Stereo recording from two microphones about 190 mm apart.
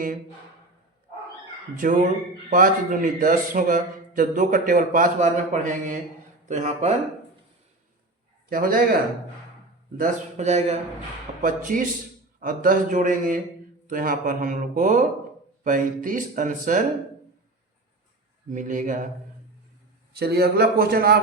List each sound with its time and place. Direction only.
1.8 s a man's voice: 45° right (ahead or behind)
8.4 s a man's voice: 50° right (ahead or behind)
10.0 s a man's voice: 35° right (ahead or behind)
18.5 s a man's voice: 45° right (ahead or behind)
20.1 s a man's voice: 55° right (ahead or behind)